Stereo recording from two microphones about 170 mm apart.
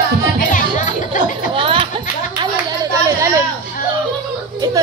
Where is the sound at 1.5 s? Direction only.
30° right (ahead or behind).